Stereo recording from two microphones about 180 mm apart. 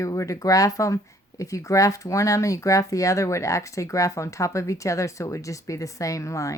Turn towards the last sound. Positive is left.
turn(degrees=15)  # may be behind; listen again after turning